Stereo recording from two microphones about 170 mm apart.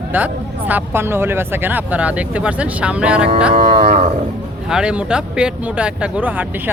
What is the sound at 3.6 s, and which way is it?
Livestock, 35° right (ahead or behind).